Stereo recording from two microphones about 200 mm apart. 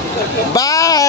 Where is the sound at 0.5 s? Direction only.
15° left (ahead or behind).